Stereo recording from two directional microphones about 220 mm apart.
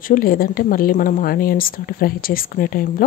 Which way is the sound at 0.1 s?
40° left (ahead or behind).